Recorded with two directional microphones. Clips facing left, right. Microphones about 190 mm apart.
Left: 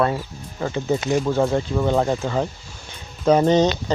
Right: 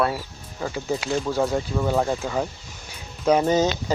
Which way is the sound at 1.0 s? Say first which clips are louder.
Left 4 dB; 20° left (ahead or behind).